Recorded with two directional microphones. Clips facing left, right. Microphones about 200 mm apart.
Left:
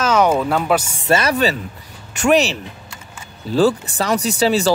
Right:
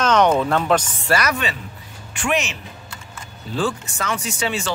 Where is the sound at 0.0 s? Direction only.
5° left (ahead or behind).